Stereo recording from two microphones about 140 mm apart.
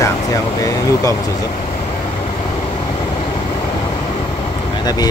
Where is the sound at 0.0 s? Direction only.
25° left (ahead or behind).